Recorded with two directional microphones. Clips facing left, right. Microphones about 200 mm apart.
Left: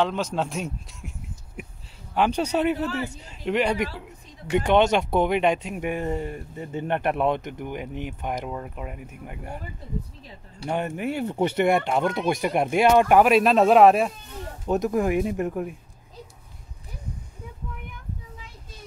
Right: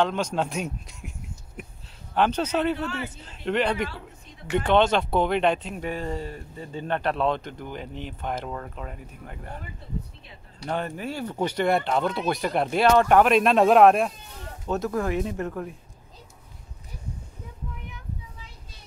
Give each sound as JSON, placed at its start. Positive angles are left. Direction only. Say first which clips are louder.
{"t": 0.0, "sound": "a man's voice", "louder": "even", "side_deg": 5}
{"t": 2.1, "sound": "speech", "louder": "left 1 dB", "side_deg": 10}
{"t": 10.6, "sound": "speech", "louder": "left 3 dB", "side_deg": 15}
{"t": 11.7, "sound": "speech", "louder": "left 1 dB", "side_deg": 10}
{"t": 14.7, "sound": "speech", "louder": "left 3 dB", "side_deg": 15}